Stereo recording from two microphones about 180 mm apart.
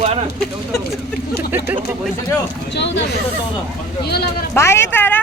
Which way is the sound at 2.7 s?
75° left (ahead or behind).